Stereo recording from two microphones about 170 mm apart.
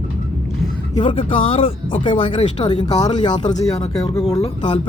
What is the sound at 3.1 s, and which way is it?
Speech, 25° left (ahead or behind).